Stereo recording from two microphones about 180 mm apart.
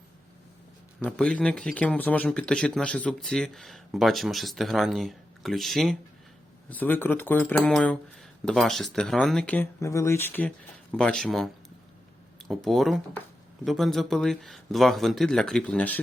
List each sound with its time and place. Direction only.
0.9 s a man's voice: 5° left (ahead or behind)